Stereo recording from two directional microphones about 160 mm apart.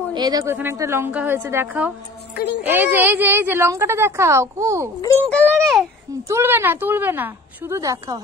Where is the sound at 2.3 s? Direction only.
90° left.